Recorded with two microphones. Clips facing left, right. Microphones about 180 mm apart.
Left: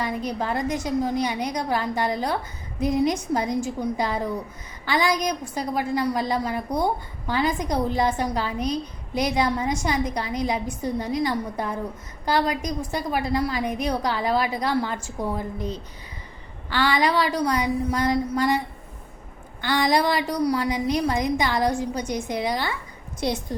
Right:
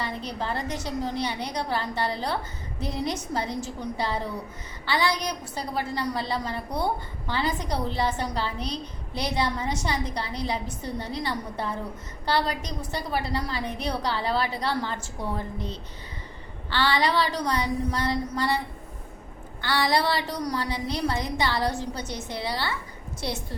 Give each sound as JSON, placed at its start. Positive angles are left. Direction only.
{"t": 0.0, "sound": "a woman's voice", "side_deg": 10}
{"t": 19.6, "sound": "a woman's voice", "side_deg": 20}